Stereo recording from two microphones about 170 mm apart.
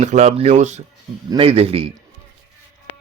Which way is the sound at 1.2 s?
30° right (ahead or behind).